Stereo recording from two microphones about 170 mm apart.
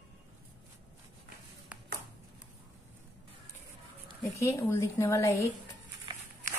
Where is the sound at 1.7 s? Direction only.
10° right (ahead or behind).